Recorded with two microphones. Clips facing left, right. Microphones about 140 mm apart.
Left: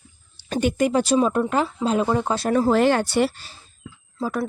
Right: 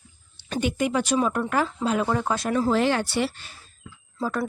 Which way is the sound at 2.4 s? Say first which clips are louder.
Left 5 dB; 40° left (ahead or behind).